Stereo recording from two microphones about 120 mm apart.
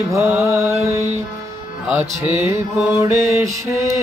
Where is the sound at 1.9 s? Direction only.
20° right (ahead or behind).